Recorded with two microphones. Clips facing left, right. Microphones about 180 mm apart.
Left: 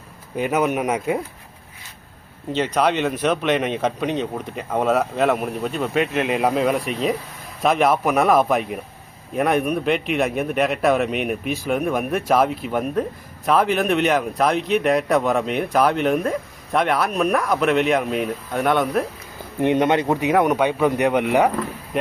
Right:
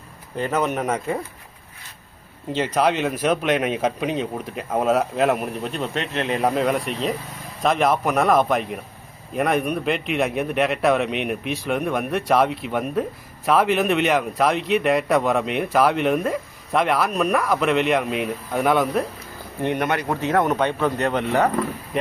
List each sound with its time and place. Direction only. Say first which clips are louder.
0.3 s speech: left 2 dB; 10° left (ahead or behind)
2.5 s a man's voice: left 1 dB; 5° right (ahead or behind)
19.6 s speech: left 5 dB; 20° left (ahead or behind)